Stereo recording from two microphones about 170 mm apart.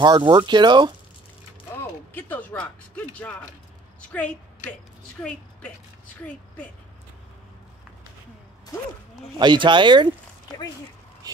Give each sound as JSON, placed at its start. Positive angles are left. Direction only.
{"t": 0.0, "sound": "speech", "side_deg": -25}
{"t": 2.1, "sound": "a woman's voice", "side_deg": 10}
{"t": 9.4, "sound": "speech", "side_deg": -25}